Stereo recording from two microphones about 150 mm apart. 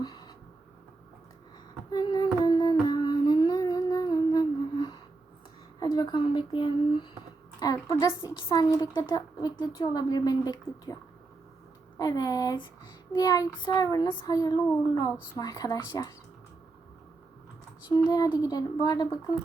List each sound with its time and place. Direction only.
0.0 s a sound: 30° left (ahead or behind)
1.9 s humming: 30° left (ahead or behind)
5.8 s a woman's voice: 25° left (ahead or behind)
11.9 s a woman's voice: 25° left (ahead or behind)
17.9 s a woman's voice: 25° left (ahead or behind)